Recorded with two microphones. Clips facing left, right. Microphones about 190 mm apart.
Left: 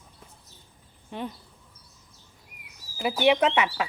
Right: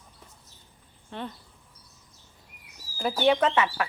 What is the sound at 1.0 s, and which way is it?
Speech, 15° left (ahead or behind).